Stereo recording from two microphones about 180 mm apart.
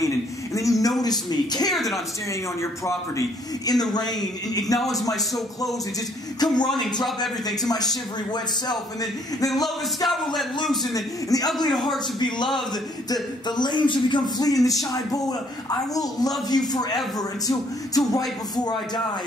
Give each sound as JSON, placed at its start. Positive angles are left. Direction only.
{"t": 0.6, "sound": "a man's voice", "side_deg": 20}
{"t": 1.7, "sound": "speech", "side_deg": 0}
{"t": 2.6, "sound": "a man's voice", "side_deg": 15}
{"t": 10.0, "sound": "speech", "side_deg": 0}
{"t": 10.9, "sound": "speech", "side_deg": 20}
{"t": 11.7, "sound": "speech", "side_deg": 0}
{"t": 13.1, "sound": "speech", "side_deg": 25}